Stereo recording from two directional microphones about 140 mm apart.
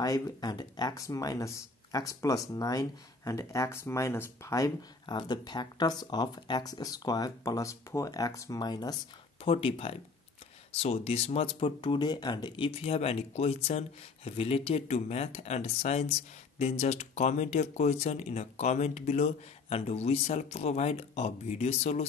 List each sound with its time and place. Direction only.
0.0 s speech: 25° left (ahead or behind)
9.4 s speech: 40° left (ahead or behind)